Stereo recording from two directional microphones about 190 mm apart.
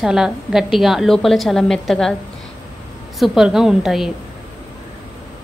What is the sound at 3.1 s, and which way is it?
Speech, centre (ahead or behind).